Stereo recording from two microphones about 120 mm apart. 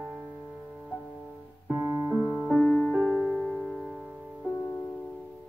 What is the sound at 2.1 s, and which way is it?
Music, 15° left (ahead or behind).